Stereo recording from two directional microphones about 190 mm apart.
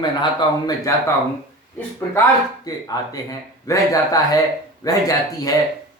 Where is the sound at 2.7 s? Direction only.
20° left (ahead or behind).